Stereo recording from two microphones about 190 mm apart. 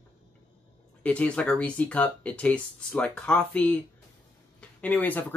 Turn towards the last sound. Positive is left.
turn(degrees=10)  # may be behind; listen again after turning